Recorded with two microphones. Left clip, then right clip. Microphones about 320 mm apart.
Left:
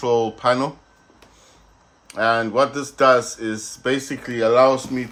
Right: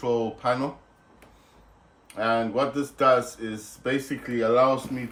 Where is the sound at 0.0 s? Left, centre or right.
Left.